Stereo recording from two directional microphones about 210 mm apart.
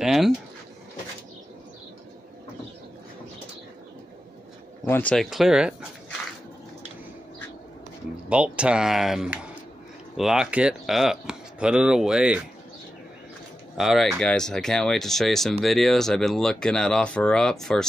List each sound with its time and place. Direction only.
0.0 s a sound: centre (ahead or behind)
4.8 s speech: 10° left (ahead or behind)
8.3 s speech: 5° right (ahead or behind)
13.7 s speech: centre (ahead or behind)